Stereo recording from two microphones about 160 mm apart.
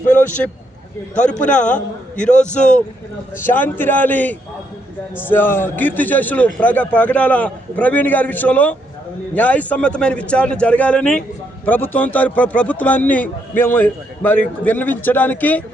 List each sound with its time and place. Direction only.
0.3 s speech: 10° left (ahead or behind)
1.4 s a man's voice: 50° left (ahead or behind)
2.1 s speech: 5° left (ahead or behind)